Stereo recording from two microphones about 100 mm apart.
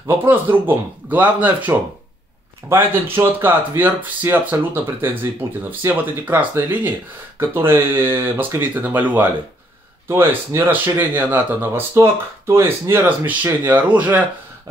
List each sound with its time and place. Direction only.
0.0 s speech: 20° right (ahead or behind)